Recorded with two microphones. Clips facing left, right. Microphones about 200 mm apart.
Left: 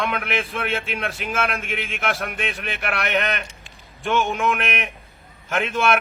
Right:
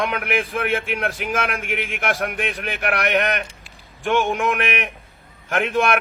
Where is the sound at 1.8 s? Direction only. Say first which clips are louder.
Right 3 dB; 55° right (ahead or behind).